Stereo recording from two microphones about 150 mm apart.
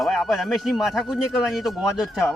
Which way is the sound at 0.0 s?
Centre (ahead or behind).